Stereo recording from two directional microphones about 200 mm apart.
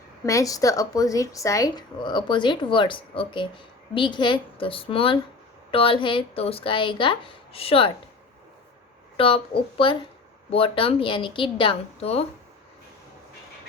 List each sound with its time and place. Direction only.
0.3 s speech: 15° left (ahead or behind)
9.1 s speech: 25° left (ahead or behind)